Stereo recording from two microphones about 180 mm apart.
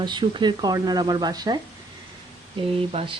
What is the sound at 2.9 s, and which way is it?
Speech, 30° right (ahead or behind).